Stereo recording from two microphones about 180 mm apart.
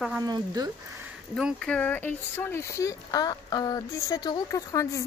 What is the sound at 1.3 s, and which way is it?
Speech, centre (ahead or behind).